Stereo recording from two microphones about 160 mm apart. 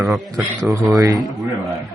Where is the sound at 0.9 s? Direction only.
25° right (ahead or behind).